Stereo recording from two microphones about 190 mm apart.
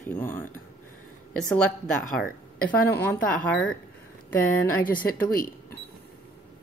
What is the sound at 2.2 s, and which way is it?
Speech, 50° left (ahead or behind).